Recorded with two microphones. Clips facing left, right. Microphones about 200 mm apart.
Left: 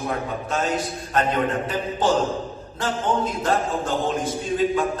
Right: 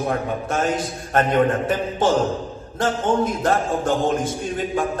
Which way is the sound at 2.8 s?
50° right (ahead or behind).